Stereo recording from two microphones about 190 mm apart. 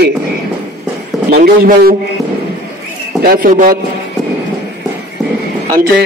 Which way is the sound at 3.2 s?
50° right (ahead or behind).